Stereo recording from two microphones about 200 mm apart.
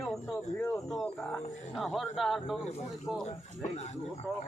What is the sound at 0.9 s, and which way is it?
Speech, centre (ahead or behind).